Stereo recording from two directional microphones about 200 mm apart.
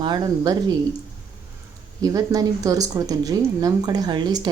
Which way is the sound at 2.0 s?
15° right (ahead or behind).